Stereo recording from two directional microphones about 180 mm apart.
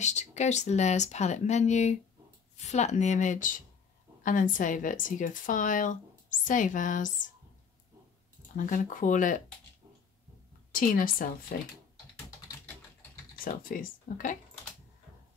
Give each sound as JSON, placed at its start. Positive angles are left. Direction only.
{"t": 0.0, "sound": "speech", "side_deg": 40}
{"t": 8.5, "sound": "speech", "side_deg": 45}
{"t": 10.7, "sound": "speech", "side_deg": 50}
{"t": 13.4, "sound": "speech", "side_deg": 50}